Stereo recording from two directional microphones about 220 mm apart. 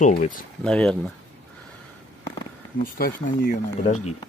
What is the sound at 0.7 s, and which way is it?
Speech, 5° left (ahead or behind).